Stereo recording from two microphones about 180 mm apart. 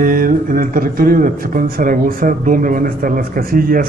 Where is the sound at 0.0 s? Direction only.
50° right (ahead or behind).